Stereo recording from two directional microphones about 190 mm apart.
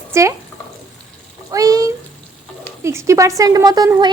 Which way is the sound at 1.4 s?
20° right (ahead or behind).